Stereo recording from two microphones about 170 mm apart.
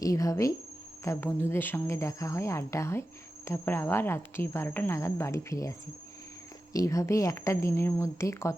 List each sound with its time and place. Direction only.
0.0 s speech: 20° left (ahead or behind)
6.7 s speech: 20° left (ahead or behind)